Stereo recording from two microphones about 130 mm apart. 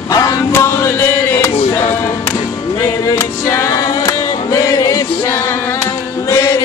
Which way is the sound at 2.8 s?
20° left (ahead or behind).